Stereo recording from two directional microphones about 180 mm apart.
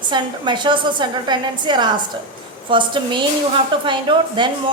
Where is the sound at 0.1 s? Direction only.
25° right (ahead or behind).